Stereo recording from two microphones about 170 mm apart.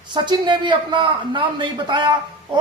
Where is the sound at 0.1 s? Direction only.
25° right (ahead or behind).